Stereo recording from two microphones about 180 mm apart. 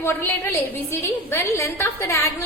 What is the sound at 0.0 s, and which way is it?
A woman's voice, 15° left (ahead or behind).